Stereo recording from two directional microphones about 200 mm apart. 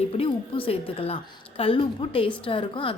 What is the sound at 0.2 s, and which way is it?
A woman's voice, 30° left (ahead or behind).